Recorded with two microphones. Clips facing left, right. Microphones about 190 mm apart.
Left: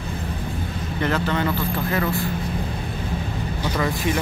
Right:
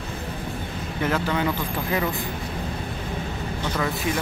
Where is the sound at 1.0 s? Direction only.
10° right (ahead or behind).